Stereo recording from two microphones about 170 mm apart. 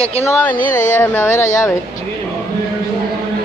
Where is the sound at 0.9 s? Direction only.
15° left (ahead or behind).